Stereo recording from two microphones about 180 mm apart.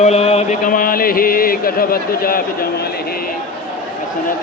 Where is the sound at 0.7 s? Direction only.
55° left (ahead or behind).